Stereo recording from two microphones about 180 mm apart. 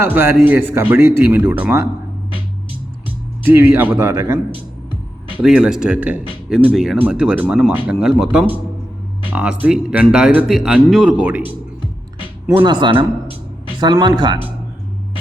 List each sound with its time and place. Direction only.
0.0 s speech: 15° right (ahead or behind)
3.4 s speech: 10° right (ahead or behind)
12.6 s speech: 25° right (ahead or behind)